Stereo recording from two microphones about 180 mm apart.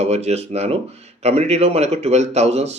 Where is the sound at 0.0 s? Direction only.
35° right (ahead or behind).